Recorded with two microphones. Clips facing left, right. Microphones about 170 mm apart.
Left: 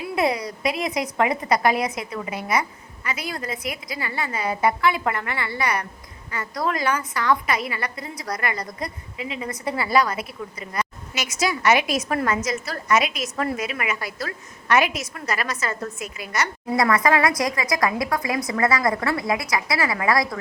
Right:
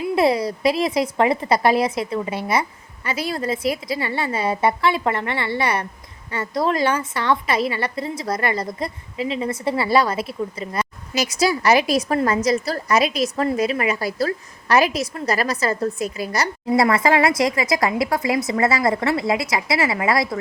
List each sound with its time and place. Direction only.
0.2 s a woman's voice: 30° right (ahead or behind)